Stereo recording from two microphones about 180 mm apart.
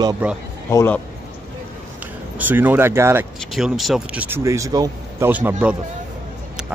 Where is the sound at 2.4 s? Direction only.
10° right (ahead or behind).